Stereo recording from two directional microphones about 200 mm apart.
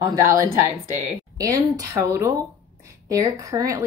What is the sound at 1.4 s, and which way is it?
A woman's voice, 15° right (ahead or behind).